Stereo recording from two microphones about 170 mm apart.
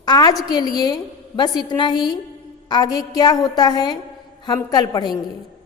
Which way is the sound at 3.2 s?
25° left (ahead or behind).